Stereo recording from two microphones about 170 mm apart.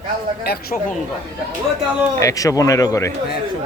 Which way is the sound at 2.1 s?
20° left (ahead or behind).